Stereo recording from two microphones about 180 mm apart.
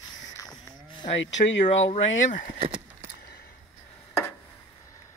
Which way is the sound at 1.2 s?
90° left.